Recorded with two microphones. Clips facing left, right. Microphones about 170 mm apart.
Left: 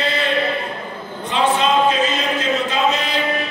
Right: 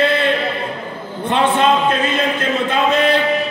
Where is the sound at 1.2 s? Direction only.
55° right (ahead or behind).